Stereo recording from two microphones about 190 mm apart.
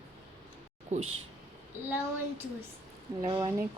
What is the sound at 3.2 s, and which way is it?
Speech, 25° right (ahead or behind).